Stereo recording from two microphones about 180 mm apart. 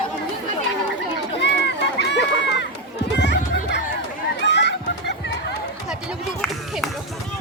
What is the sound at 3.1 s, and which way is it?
Music, 75° left (ahead or behind).